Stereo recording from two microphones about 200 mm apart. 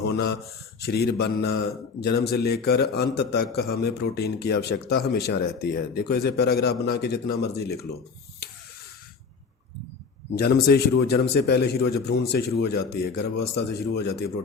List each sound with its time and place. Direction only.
0.0 s a sound: 55° left (ahead or behind)
0.8 s a man's voice: 55° left (ahead or behind)
10.3 s a man's voice: 50° left (ahead or behind)